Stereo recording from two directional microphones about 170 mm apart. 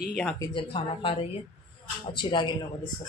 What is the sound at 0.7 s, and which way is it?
A woman's voice, 35° left (ahead or behind).